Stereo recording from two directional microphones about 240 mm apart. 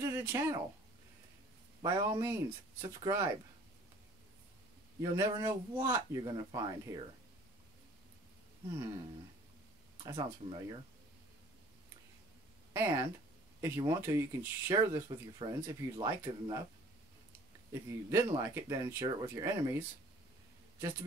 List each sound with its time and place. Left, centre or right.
0.0 s speech: centre
1.8 s speech: centre
5.1 s speech: centre
10.0 s speech: centre
12.7 s speech: centre
17.8 s speech: centre